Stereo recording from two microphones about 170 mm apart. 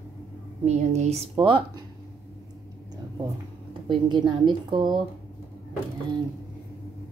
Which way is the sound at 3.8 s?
30° right (ahead or behind).